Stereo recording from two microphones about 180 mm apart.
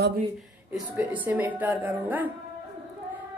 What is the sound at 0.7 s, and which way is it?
A woman's voice, 10° right (ahead or behind).